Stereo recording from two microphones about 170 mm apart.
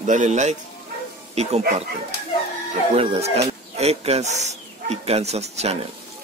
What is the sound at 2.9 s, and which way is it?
Speech, 35° right (ahead or behind).